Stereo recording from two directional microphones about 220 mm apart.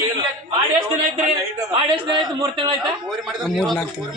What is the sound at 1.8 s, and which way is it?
A man's voice, 25° right (ahead or behind).